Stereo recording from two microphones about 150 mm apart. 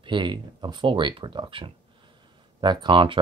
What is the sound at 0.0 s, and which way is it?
Speech, 30° right (ahead or behind).